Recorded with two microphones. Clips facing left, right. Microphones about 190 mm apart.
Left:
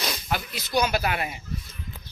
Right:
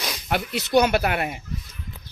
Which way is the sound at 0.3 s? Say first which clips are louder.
Right 5 dB; 65° right (ahead or behind).